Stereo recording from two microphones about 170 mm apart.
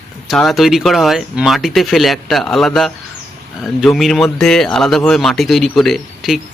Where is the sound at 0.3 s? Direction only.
Centre (ahead or behind).